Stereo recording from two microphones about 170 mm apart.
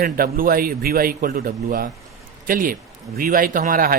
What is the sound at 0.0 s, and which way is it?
Speech, 60° right (ahead or behind).